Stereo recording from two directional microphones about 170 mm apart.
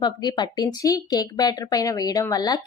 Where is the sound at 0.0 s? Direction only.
25° left (ahead or behind).